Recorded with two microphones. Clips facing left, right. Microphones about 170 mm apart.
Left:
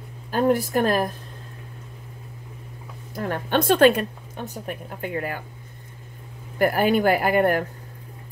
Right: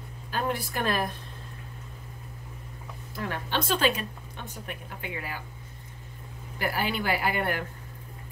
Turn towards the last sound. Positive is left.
turn(degrees=45)  # may be behind; listen again after turning